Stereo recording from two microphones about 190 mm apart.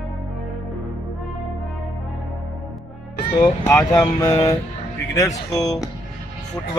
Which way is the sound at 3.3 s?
15° left (ahead or behind).